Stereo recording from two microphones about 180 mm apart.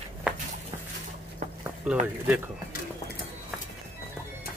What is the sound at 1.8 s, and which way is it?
Speech, 5° right (ahead or behind).